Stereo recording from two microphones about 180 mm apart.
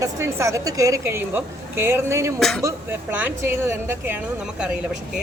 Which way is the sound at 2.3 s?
5° left (ahead or behind).